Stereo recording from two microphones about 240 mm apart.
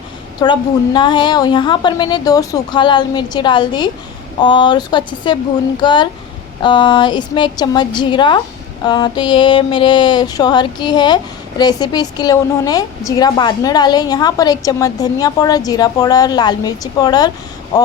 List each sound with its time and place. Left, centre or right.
0.4 s a woman's voice: centre